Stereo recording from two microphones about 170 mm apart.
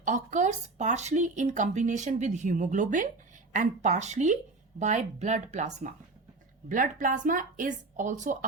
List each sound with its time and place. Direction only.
0.0 s a woman's voice: 45° right (ahead or behind)